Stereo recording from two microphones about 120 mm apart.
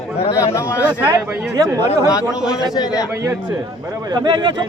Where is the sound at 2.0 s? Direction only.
30° left (ahead or behind).